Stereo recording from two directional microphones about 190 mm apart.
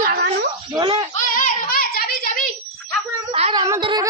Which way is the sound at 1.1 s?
40° left (ahead or behind).